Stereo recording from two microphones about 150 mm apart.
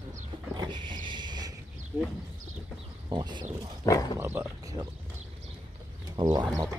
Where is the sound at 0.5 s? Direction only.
30° right (ahead or behind).